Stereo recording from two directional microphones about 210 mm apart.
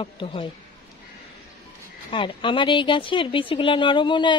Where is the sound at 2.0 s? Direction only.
25° left (ahead or behind).